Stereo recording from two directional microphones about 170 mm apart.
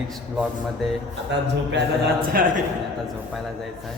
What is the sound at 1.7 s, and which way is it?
Speech, 70° right (ahead or behind).